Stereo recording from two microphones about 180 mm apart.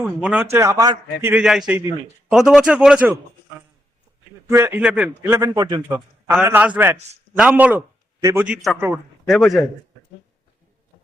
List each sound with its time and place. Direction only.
0.0 s a man's voice: 5° right (ahead or behind)
1.3 s speech: 5° right (ahead or behind)
4.4 s a man's voice: 15° right (ahead or behind)
5.9 s a man's voice: 10° right (ahead or behind)
9.3 s speech: centre (ahead or behind)